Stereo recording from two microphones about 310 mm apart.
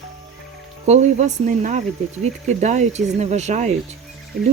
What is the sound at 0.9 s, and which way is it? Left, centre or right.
Speech, right.